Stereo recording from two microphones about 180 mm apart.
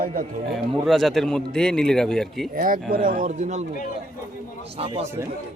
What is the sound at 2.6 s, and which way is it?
A man's voice, 50° right (ahead or behind).